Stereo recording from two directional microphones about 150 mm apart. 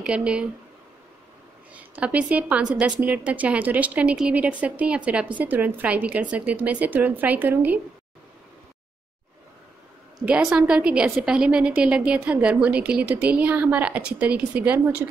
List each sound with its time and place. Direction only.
0.0 s a woman's voice: 5° right (ahead or behind)
1.7 s a woman's voice: 10° right (ahead or behind)
10.2 s a woman's voice: 10° right (ahead or behind)